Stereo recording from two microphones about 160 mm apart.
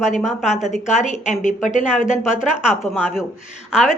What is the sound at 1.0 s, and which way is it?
A woman's voice, 50° left (ahead or behind).